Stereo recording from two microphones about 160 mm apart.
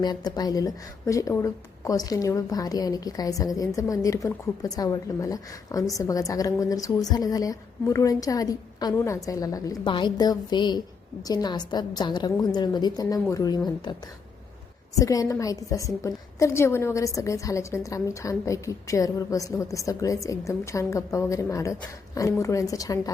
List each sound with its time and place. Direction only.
0.0 s speech: 25° left (ahead or behind)
14.9 s speech: 20° left (ahead or behind)